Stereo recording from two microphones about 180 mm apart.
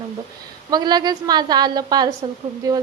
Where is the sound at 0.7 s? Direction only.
25° right (ahead or behind).